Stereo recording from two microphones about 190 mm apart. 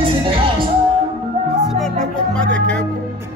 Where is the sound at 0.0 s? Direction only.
30° right (ahead or behind).